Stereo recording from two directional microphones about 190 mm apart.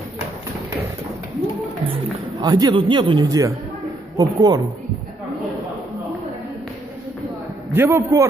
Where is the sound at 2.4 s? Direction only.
20° right (ahead or behind).